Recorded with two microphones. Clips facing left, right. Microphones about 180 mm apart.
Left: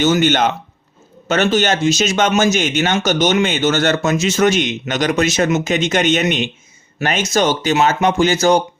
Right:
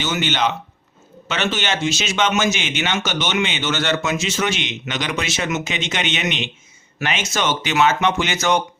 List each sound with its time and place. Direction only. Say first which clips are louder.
0.0 s speech: left 7 dB; 45° left (ahead or behind)